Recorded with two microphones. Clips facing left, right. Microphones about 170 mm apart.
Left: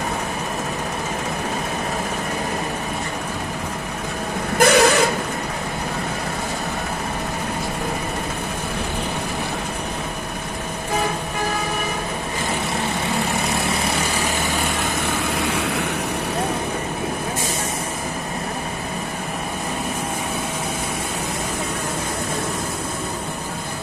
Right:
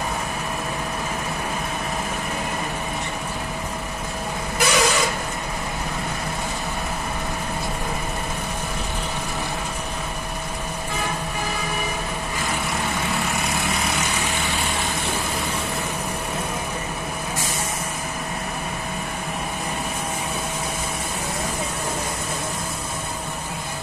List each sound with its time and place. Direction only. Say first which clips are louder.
4.6 s vehicle: left 7 dB; 60° left (ahead or behind)